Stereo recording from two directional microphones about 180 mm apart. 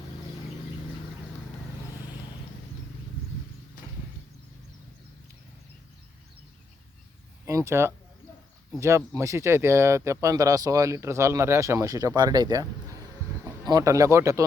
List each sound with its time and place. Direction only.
7.4 s speech: 15° right (ahead or behind)